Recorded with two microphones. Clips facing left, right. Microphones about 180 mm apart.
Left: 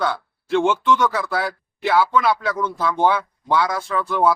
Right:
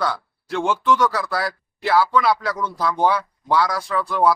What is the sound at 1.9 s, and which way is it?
Speech, centre (ahead or behind).